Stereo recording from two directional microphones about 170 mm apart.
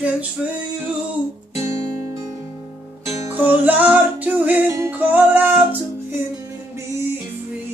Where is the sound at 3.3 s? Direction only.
10° right (ahead or behind).